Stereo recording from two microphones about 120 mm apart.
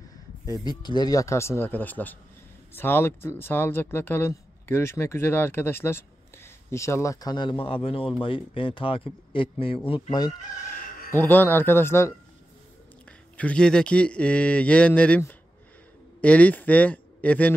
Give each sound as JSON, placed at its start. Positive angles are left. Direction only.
{"t": 0.5, "sound": "speech", "side_deg": 35}
{"t": 10.1, "sound": "speech", "side_deg": 35}
{"t": 11.1, "sound": "speech", "side_deg": 15}
{"t": 13.4, "sound": "a man's voice", "side_deg": 10}